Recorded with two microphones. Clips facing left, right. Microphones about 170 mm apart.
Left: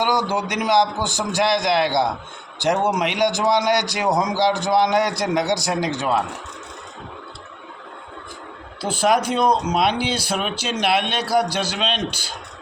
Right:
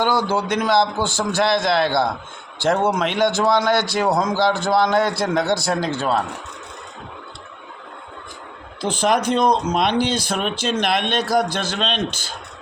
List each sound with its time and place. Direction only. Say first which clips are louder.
0.0 s a man's voice: right 1 dB; 15° left (ahead or behind)
8.8 s a man's voice: even; 10° left (ahead or behind)